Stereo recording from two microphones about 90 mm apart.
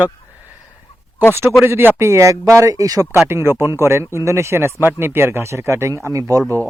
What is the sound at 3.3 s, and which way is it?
Speech, 25° right (ahead or behind).